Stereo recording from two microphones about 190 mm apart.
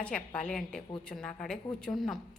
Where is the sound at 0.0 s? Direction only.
5° left (ahead or behind).